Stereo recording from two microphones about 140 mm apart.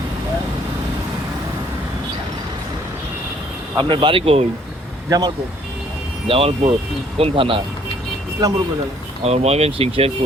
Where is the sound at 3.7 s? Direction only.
35° right (ahead or behind).